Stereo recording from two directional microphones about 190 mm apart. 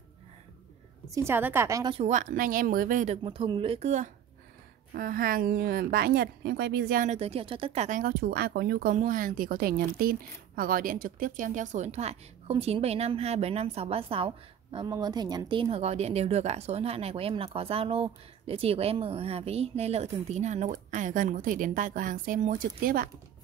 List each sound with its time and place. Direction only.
1.1 s a woman's voice: 10° right (ahead or behind)
2.0 s a woman's voice: 40° right (ahead or behind)
3.3 s speech: 25° right (ahead or behind)
4.9 s a woman's voice: 50° right (ahead or behind)